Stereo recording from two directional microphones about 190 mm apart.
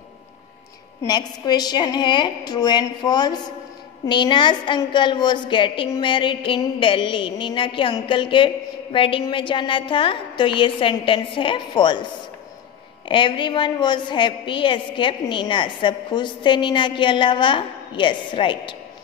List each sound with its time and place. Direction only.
1.0 s a woman's voice: 20° left (ahead or behind)
13.1 s a woman's voice: 25° left (ahead or behind)